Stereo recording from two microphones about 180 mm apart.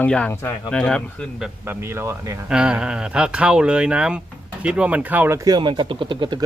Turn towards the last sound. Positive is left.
turn(degrees=-25)  # may be behind; listen again after turning